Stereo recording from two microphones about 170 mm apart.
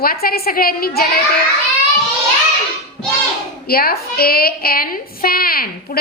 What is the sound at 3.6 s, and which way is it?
A woman's voice, 65° left (ahead or behind).